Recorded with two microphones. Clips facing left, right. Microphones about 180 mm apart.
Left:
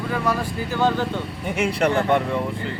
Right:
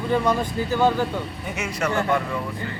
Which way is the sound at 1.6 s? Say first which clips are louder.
Left 6 dB; 30° left (ahead or behind).